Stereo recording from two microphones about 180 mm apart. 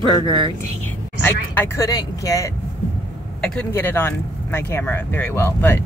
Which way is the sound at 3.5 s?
10° left (ahead or behind).